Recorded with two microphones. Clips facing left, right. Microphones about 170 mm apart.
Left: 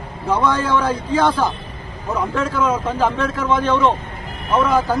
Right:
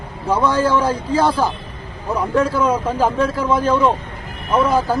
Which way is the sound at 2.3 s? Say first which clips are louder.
Right 5 dB; 35° right (ahead or behind).